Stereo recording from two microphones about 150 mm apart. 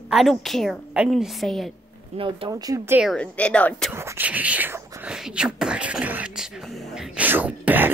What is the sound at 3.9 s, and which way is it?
Speech, 15° right (ahead or behind).